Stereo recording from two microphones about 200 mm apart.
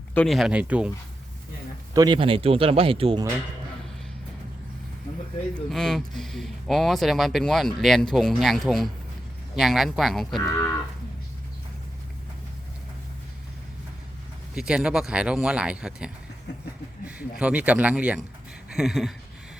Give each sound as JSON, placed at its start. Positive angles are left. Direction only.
{"t": 0.1, "sound": "speech", "side_deg": 5}
{"t": 1.9, "sound": "speech", "side_deg": -20}
{"t": 5.5, "sound": "speech", "side_deg": 0}
{"t": 14.5, "sound": "speech", "side_deg": -5}
{"t": 17.4, "sound": "speech", "side_deg": -5}